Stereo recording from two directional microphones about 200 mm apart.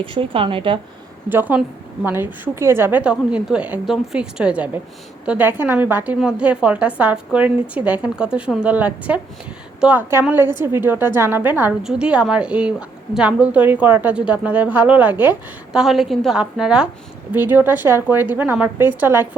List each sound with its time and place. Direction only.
0.0 s a woman's voice: 25° right (ahead or behind)
1.3 s a woman's voice: 10° right (ahead or behind)